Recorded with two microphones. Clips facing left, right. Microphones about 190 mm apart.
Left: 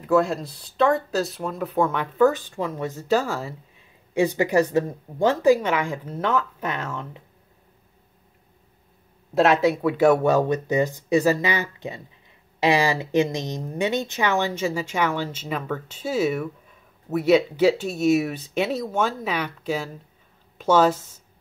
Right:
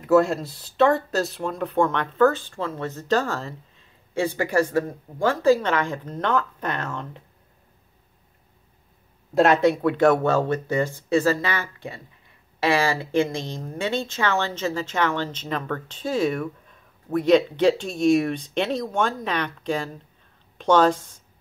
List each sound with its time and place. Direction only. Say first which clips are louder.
0.0 s a woman's voice: right 2 dB; centre (ahead or behind)
9.3 s a woman's voice: right 1 dB; centre (ahead or behind)